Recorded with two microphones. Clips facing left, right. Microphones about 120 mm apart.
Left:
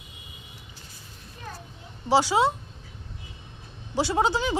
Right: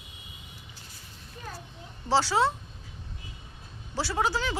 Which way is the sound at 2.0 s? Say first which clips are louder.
Left 3 dB; 15° left (ahead or behind).